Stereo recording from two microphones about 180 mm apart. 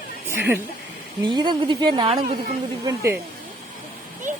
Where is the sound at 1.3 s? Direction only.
25° right (ahead or behind).